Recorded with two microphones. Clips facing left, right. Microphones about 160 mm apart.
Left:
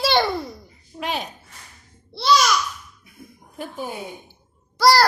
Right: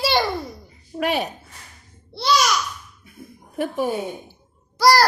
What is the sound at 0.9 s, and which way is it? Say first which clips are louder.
Speech: right 6 dB; 65° right (ahead or behind).